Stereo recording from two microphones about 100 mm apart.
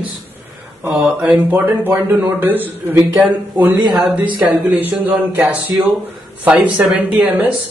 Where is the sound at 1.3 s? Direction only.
20° right (ahead or behind).